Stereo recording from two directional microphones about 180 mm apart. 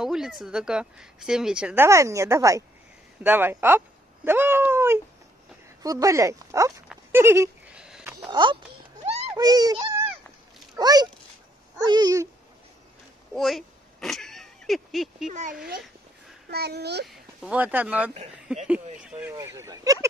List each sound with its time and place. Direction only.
0.0 s a woman's voice: 5° right (ahead or behind)
1.9 s speech: 15° right (ahead or behind)
7.1 s goat: 15° right (ahead or behind)
8.3 s speech: 25° right (ahead or behind)
9.0 s a sound: 35° right (ahead or behind)
9.3 s a child's voice: 20° right (ahead or behind)
13.3 s a sound: centre (ahead or behind)
15.2 s speech: 45° right (ahead or behind)
16.4 s a child's voice: 65° right (ahead or behind)
17.1 s a woman's voice: 5° right (ahead or behind)
19.3 s speech: 15° right (ahead or behind)